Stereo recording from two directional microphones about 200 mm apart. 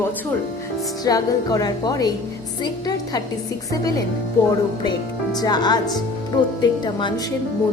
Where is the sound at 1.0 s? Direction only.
20° left (ahead or behind).